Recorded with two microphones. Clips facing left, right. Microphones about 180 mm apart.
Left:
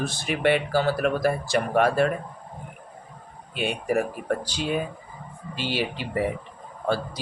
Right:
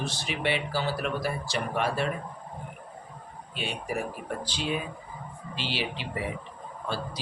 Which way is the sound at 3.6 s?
55° left (ahead or behind).